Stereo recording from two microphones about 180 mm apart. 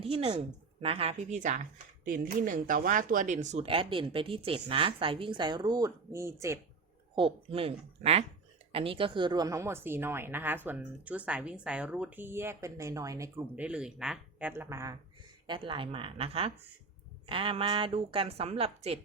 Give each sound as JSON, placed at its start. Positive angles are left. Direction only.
{"t": 0.0, "sound": "a woman's voice", "side_deg": -35}
{"t": 7.2, "sound": "a woman's voice", "side_deg": -30}
{"t": 13.7, "sound": "speech", "side_deg": -5}
{"t": 15.4, "sound": "a woman's voice", "side_deg": -30}